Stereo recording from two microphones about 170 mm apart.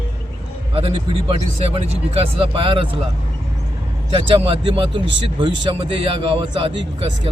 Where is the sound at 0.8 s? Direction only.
35° right (ahead or behind).